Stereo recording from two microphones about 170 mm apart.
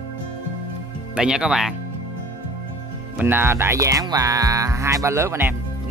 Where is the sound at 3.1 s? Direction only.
10° right (ahead or behind).